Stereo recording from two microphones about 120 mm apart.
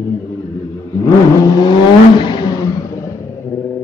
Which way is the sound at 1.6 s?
40° left (ahead or behind).